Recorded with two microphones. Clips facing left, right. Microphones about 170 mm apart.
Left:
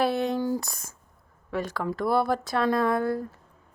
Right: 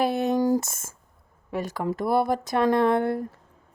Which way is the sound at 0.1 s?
45° right (ahead or behind).